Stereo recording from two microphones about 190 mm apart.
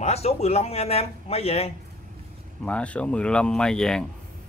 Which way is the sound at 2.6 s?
5° left (ahead or behind).